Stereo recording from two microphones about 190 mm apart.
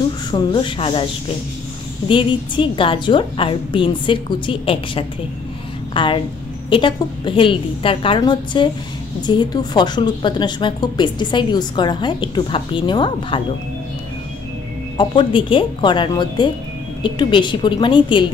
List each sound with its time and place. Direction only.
0.3 s a woman's voice: 25° left (ahead or behind)
2.0 s a woman's voice: 25° left (ahead or behind)
15.0 s a woman's voice: 25° left (ahead or behind)